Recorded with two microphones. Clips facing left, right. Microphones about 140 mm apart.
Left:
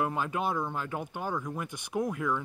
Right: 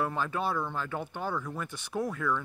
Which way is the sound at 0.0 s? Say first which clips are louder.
Left 1 dB; 15° left (ahead or behind).